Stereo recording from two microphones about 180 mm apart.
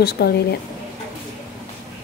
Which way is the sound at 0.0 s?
60° left (ahead or behind).